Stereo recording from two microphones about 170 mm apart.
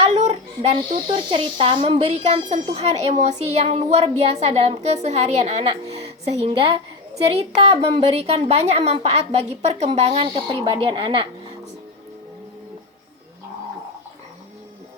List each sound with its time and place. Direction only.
0.0 s a child's voice: 40° right (ahead or behind)